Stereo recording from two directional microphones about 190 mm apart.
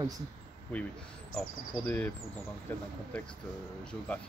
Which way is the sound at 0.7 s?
5° left (ahead or behind).